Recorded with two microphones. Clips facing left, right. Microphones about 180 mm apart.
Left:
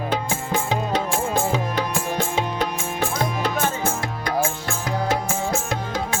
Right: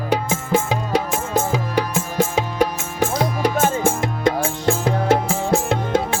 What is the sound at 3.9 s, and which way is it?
Music, 25° right (ahead or behind).